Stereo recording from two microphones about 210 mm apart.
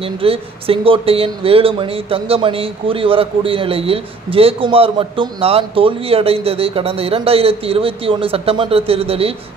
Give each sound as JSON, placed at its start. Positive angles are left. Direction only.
{"t": 0.0, "sound": "speech", "side_deg": -25}